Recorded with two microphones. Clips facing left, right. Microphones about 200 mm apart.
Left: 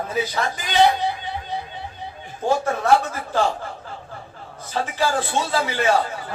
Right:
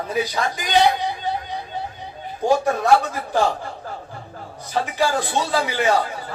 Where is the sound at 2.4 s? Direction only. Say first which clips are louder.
Right 3 dB; 15° right (ahead or behind).